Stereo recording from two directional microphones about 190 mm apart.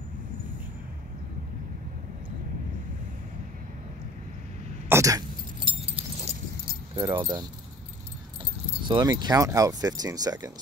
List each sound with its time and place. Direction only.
4.8 s throat clearing: 15° right (ahead or behind)
5.7 s keys jangling: 30° right (ahead or behind)
7.0 s speech: 20° right (ahead or behind)
8.8 s speech: 25° right (ahead or behind)